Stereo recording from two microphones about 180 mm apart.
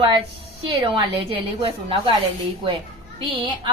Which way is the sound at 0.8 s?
25° right (ahead or behind).